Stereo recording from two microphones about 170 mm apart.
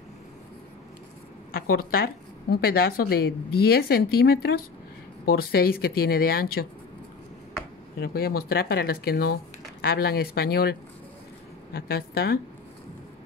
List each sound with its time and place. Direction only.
1.5 s speech: 60° left (ahead or behind)
8.0 s speech: 65° left (ahead or behind)